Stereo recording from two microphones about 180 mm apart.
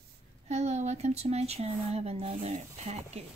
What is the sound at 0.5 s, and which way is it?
Speech, 40° right (ahead or behind).